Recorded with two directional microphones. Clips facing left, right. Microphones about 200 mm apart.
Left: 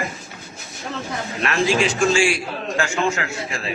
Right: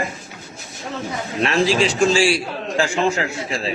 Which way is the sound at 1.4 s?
30° right (ahead or behind).